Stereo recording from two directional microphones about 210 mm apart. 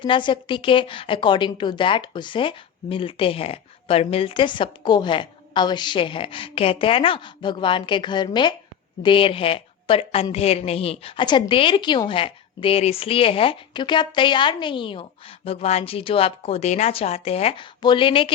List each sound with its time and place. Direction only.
0.0 s a woman's voice: 20° left (ahead or behind)